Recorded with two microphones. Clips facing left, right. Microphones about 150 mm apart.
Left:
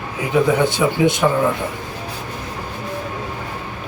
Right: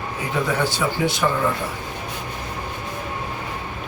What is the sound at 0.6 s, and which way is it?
Speech, 20° left (ahead or behind).